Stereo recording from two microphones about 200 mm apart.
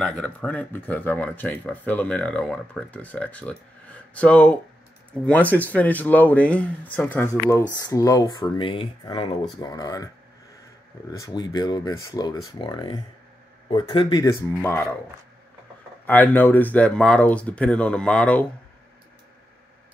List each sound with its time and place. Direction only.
0.0 s speech: 5° left (ahead or behind)
11.1 s speech: 20° left (ahead or behind)
14.6 s speech: 10° left (ahead or behind)
16.1 s speech: 10° left (ahead or behind)